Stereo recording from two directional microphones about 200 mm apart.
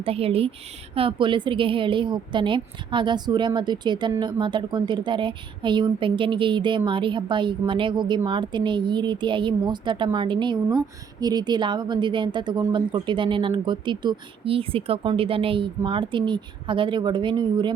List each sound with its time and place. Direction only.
0.0 s a woman's voice: 30° right (ahead or behind)